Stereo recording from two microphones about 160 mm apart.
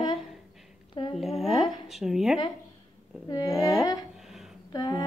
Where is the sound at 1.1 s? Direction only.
Centre (ahead or behind).